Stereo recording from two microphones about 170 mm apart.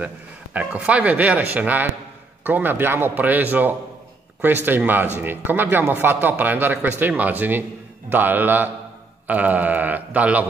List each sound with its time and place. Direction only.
0.0 s a man's voice: 10° right (ahead or behind)